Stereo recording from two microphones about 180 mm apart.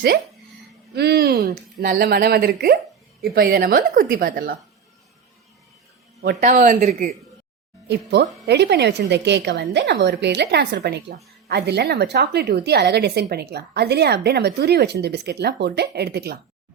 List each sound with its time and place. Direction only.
0.9 s a woman's voice: 60° right (ahead or behind)
6.4 s a woman's voice: 40° right (ahead or behind)
7.9 s a woman's voice: 70° right (ahead or behind)